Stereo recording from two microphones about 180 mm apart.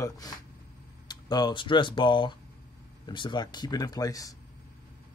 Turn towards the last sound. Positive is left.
turn(degrees=20)  # may be behind; listen again after turning